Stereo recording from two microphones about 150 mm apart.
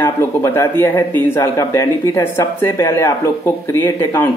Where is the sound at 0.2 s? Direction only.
20° left (ahead or behind).